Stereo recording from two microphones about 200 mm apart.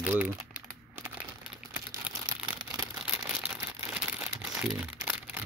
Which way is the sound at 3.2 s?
5° right (ahead or behind).